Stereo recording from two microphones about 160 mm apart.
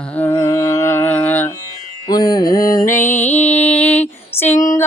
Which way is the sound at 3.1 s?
45° left (ahead or behind).